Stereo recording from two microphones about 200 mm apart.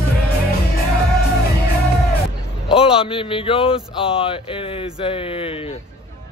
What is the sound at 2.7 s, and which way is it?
A man's voice, 25° left (ahead or behind).